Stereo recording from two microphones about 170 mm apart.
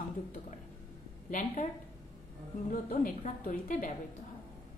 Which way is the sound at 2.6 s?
55° left (ahead or behind).